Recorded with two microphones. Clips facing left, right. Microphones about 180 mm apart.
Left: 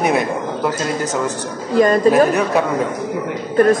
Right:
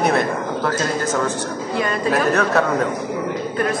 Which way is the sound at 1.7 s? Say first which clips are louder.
Left 10 dB; 40° left (ahead or behind).